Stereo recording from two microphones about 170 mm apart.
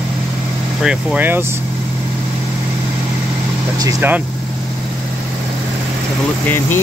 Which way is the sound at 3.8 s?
15° right (ahead or behind).